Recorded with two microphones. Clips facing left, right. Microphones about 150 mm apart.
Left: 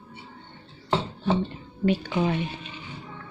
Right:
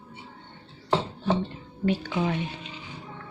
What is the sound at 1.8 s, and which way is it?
Speech, 20° left (ahead or behind).